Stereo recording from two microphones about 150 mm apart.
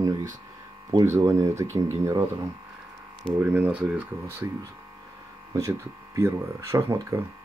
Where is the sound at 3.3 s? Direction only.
10° right (ahead or behind).